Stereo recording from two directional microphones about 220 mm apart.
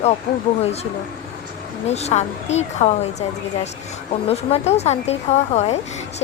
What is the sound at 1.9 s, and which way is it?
A woman's voice, 30° left (ahead or behind).